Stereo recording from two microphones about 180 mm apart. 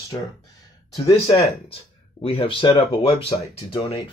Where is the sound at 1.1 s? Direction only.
35° left (ahead or behind).